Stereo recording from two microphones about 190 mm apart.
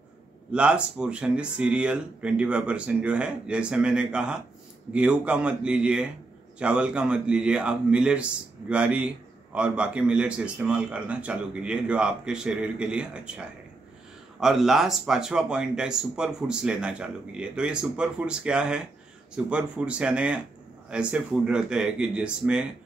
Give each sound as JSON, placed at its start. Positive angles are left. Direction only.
{"t": 0.5, "sound": "a man's voice", "side_deg": -5}